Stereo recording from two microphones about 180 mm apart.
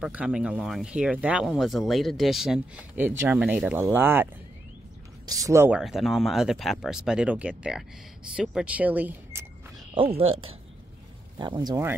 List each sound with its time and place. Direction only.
0.0 s speech: 5° right (ahead or behind)
9.9 s speech: 30° right (ahead or behind)